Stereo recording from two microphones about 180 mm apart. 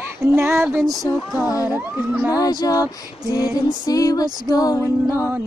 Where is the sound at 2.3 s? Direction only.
20° left (ahead or behind).